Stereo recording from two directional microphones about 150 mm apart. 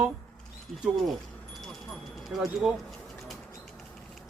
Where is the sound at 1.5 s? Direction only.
Centre (ahead or behind).